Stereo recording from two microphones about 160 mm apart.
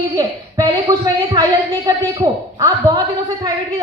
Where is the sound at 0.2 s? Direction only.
20° right (ahead or behind).